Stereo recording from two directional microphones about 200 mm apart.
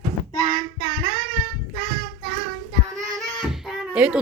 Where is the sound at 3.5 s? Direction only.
Centre (ahead or behind).